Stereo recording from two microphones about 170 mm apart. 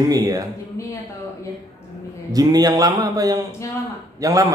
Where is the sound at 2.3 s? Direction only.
20° right (ahead or behind).